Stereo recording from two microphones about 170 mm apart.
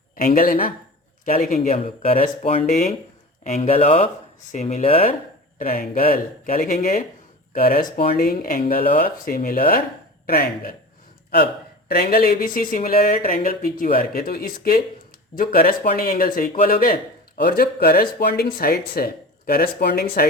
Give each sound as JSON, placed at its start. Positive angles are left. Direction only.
{"t": 0.2, "sound": "speech", "side_deg": 50}
{"t": 1.5, "sound": "speech", "side_deg": 40}
{"t": 5.5, "sound": "speech", "side_deg": 55}
{"t": 7.5, "sound": "speech", "side_deg": 60}
{"t": 11.9, "sound": "speech", "side_deg": 60}